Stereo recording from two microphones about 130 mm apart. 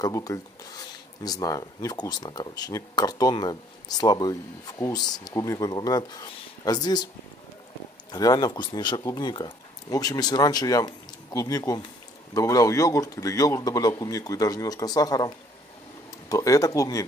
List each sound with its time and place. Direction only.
0.0 s speech: 25° left (ahead or behind)
8.1 s speech: 30° left (ahead or behind)